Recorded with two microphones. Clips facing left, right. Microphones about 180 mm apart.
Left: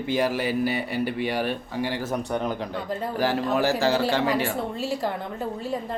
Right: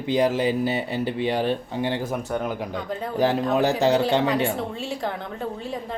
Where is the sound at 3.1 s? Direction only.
20° right (ahead or behind).